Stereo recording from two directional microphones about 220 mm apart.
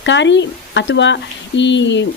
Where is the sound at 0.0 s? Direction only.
55° left (ahead or behind).